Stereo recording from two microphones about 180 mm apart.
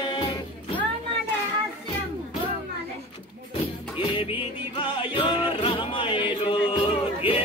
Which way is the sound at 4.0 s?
30° left (ahead or behind).